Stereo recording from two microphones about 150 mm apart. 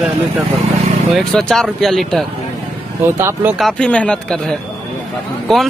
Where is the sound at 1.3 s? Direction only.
5° left (ahead or behind).